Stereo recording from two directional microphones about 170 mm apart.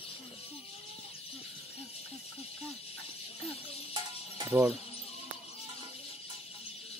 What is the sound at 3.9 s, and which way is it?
Music, 20° right (ahead or behind).